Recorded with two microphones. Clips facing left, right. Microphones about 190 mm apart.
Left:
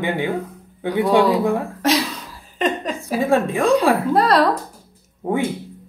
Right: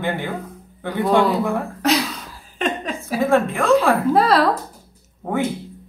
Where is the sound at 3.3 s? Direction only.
15° left (ahead or behind).